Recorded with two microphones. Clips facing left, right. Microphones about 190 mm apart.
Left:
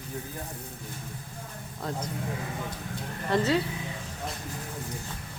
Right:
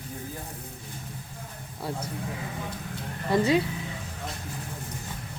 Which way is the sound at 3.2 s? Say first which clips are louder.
Right 2 dB; 15° right (ahead or behind).